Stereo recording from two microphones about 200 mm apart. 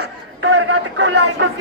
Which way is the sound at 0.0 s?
65° right (ahead or behind).